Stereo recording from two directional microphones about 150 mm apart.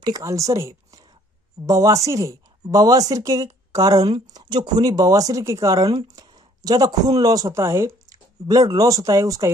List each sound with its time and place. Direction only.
0.0 s a woman's voice: 25° right (ahead or behind)